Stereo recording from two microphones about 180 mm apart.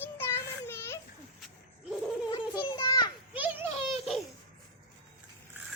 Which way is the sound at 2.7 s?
20° left (ahead or behind).